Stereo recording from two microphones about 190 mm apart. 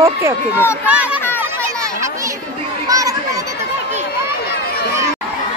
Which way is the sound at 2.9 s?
15° right (ahead or behind).